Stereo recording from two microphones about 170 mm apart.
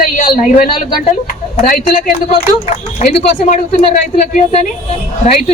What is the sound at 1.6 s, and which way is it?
Speech, 55° left (ahead or behind).